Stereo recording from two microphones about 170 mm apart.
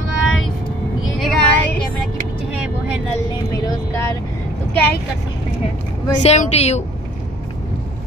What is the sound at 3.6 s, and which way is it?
Speech, 15° left (ahead or behind).